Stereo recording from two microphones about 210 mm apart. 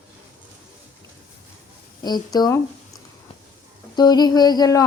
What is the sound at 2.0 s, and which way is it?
Speech, 20° left (ahead or behind).